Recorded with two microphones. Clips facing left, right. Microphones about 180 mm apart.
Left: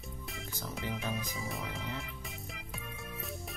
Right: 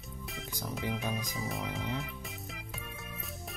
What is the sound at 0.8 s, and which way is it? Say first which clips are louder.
Speech: right 2 dB; 10° right (ahead or behind).